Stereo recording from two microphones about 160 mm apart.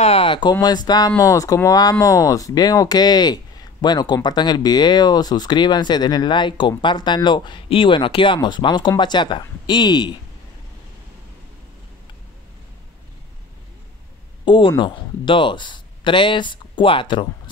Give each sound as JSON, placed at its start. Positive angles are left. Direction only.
{"t": 0.0, "sound": "speech", "side_deg": 35}
{"t": 14.4, "sound": "a sound", "side_deg": 30}
{"t": 14.8, "sound": "speech", "side_deg": 30}